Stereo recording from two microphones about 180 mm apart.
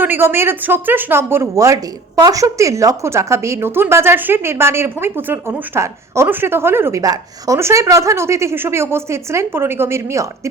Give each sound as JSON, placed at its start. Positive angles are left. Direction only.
{"t": 0.0, "sound": "speech", "side_deg": -10}